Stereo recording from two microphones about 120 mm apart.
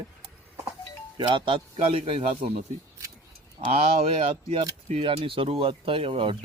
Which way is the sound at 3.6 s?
55° right (ahead or behind).